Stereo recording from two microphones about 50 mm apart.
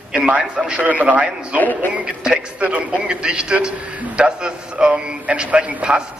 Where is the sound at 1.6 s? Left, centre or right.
Left.